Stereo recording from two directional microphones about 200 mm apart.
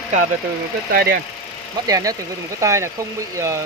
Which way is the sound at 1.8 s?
15° right (ahead or behind).